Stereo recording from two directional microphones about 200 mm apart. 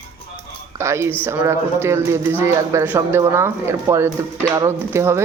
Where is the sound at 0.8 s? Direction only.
15° right (ahead or behind).